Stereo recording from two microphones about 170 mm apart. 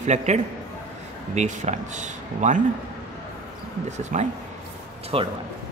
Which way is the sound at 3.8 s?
45° right (ahead or behind).